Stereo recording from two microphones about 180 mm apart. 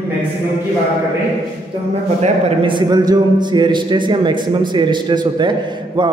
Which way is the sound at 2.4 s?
25° right (ahead or behind).